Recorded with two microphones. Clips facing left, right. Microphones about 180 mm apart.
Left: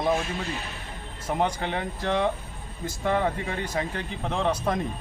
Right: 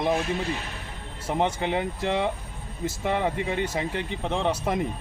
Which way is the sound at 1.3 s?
25° right (ahead or behind).